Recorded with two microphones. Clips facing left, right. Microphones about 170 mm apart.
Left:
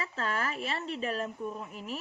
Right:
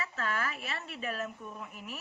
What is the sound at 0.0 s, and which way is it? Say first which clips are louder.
Speech: left 2 dB; 30° left (ahead or behind).